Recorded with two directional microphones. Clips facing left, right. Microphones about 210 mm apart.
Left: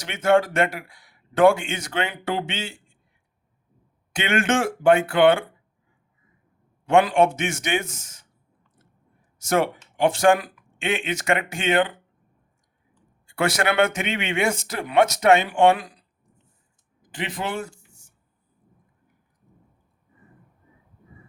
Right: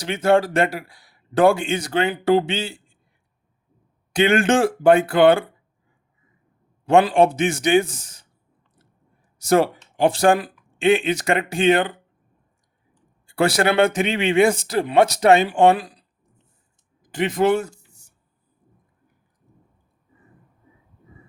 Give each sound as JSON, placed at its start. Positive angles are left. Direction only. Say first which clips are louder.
{"t": 0.0, "sound": "a man's voice", "louder": "right 2 dB", "side_deg": -35}
{"t": 4.1, "sound": "a man's voice", "louder": "right 5 dB", "side_deg": -35}
{"t": 6.8, "sound": "a man's voice", "louder": "right 2 dB", "side_deg": -35}
{"t": 9.4, "sound": "a man's voice", "louder": "right 5 dB", "side_deg": -35}
{"t": 13.2, "sound": "a man's voice", "louder": "right 4 dB", "side_deg": -35}
{"t": 17.0, "sound": "a sound", "louder": "right 10 dB", "side_deg": -45}